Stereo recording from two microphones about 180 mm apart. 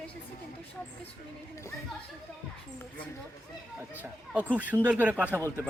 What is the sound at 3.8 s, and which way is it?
Speech, 10° right (ahead or behind).